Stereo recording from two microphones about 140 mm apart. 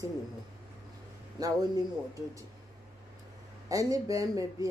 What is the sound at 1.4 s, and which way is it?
Speech, 25° right (ahead or behind).